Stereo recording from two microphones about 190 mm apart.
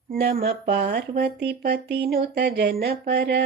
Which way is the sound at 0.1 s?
50° right (ahead or behind).